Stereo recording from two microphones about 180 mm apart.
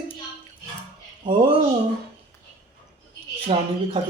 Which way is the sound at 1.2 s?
30° right (ahead or behind).